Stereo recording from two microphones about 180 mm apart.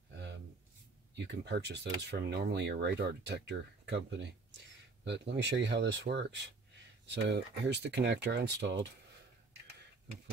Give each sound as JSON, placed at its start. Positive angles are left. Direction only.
{"t": 1.1, "sound": "speech", "side_deg": -70}